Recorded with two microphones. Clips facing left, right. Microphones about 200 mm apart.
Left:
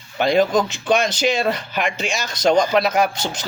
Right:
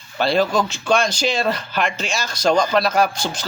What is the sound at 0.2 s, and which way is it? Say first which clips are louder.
Speech: left 2 dB; 20° left (ahead or behind).